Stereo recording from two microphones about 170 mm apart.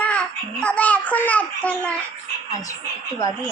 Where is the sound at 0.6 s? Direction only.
10° left (ahead or behind).